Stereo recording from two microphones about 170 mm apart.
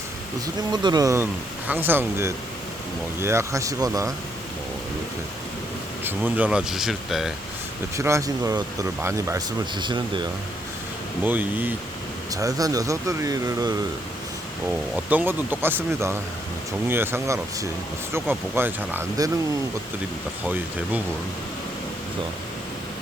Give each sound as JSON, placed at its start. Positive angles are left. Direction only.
{"t": 0.4, "sound": "speech", "side_deg": -25}
{"t": 6.1, "sound": "speech", "side_deg": -10}
{"t": 7.9, "sound": "speech", "side_deg": -15}
{"t": 11.2, "sound": "speech", "side_deg": -10}
{"t": 12.3, "sound": "speech", "side_deg": -20}
{"t": 14.9, "sound": "speech", "side_deg": -10}